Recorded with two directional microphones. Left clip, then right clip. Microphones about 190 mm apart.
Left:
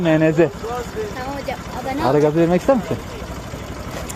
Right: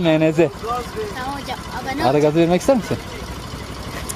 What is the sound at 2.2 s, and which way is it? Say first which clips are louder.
Speech: left 1 dB; 20° right (ahead or behind).